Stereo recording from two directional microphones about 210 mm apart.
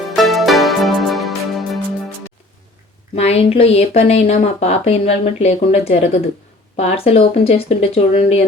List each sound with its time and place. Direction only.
0.2 s music: centre (ahead or behind)
3.2 s speech: 30° left (ahead or behind)